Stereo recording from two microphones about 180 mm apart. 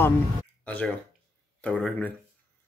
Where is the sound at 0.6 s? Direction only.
10° left (ahead or behind).